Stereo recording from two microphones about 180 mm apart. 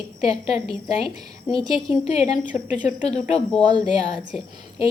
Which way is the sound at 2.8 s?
35° left (ahead or behind).